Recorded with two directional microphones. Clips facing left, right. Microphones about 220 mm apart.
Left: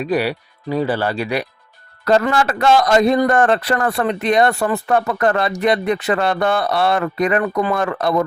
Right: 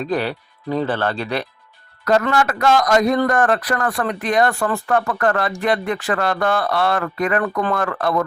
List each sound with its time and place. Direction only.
0.0 s speech: 10° left (ahead or behind)
2.3 s speech: 30° left (ahead or behind); by 7.8 s 10° left (ahead or behind)
7.8 s speech: 20° left (ahead or behind)